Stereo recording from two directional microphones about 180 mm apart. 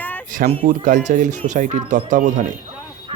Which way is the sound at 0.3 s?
50° right (ahead or behind).